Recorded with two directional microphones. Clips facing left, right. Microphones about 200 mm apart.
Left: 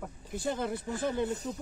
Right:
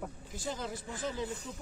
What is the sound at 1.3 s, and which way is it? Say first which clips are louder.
Speech: left 7 dB; 40° left (ahead or behind).